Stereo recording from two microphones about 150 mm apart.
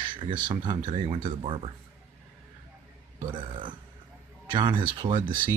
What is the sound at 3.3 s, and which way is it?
Speech, 30° right (ahead or behind).